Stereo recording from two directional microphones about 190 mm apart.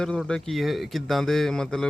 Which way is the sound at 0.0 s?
5° left (ahead or behind).